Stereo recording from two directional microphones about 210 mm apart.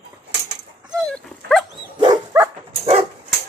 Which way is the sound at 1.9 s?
20° right (ahead or behind).